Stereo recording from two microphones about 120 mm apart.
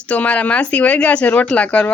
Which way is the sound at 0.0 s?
10° left (ahead or behind).